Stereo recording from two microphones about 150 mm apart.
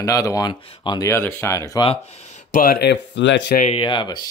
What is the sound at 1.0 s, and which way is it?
Speech, 15° left (ahead or behind).